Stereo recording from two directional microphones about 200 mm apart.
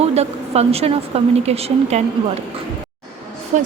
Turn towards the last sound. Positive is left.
turn(degrees=-35)  # may be behind; listen again after turning